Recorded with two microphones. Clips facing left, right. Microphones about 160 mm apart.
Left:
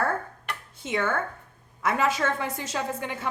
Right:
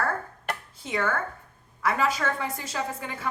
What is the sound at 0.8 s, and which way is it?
A woman's voice, 25° left (ahead or behind).